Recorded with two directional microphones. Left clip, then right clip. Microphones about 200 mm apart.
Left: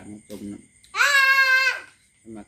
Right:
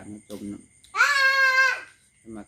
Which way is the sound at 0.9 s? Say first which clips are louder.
Left 2 dB; 45° left (ahead or behind).